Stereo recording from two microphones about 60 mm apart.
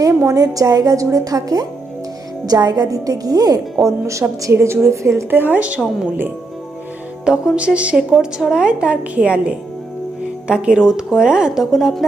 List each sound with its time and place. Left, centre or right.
0.1 s a woman's voice: right
0.3 s a woman's voice: right
3.8 s a woman's voice: right
5.3 s a woman's voice: right
5.5 s a woman's voice: right
7.3 s speech: centre
7.9 s speech: centre